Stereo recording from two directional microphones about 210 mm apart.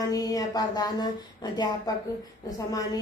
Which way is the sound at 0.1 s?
15° left (ahead or behind).